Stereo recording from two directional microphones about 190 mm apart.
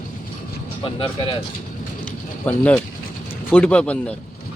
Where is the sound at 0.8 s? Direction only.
25° left (ahead or behind).